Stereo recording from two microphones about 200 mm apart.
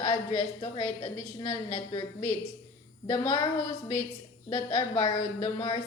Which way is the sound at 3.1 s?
20° left (ahead or behind).